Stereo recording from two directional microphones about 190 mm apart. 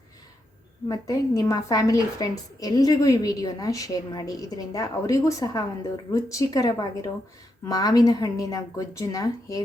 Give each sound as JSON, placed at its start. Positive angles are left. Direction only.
{"t": 0.9, "sound": "a woman's voice", "side_deg": 20}